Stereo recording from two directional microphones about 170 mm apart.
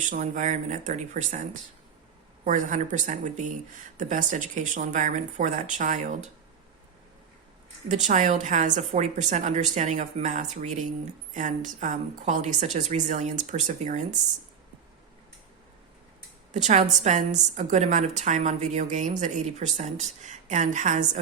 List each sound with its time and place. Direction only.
0.0 s speech: 45° right (ahead or behind)
7.9 s speech: 45° right (ahead or behind)
16.5 s speech: 45° right (ahead or behind)